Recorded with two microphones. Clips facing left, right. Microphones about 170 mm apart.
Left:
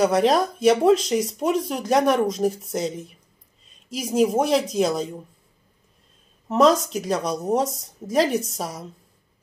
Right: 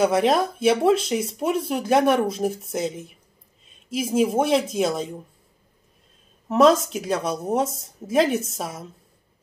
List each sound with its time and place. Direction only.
0.0 s speech: centre (ahead or behind)
6.5 s speech: 5° right (ahead or behind)